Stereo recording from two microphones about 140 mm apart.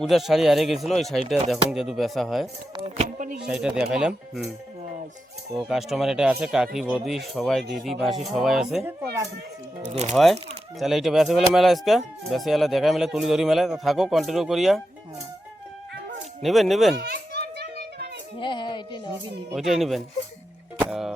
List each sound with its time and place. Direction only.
0.0 s speech: centre (ahead or behind)
2.7 s speech: 40° right (ahead or behind)
3.4 s speech: 5° right (ahead or behind)
5.5 s speech: 5° right (ahead or behind)
8.8 s speech: 20° right (ahead or behind)
9.9 s speech: 50° right (ahead or behind)
10.8 s speech: centre (ahead or behind)
16.4 s speech: centre (ahead or behind)
18.3 s speech: 35° left (ahead or behind)
19.5 s speech: centre (ahead or behind)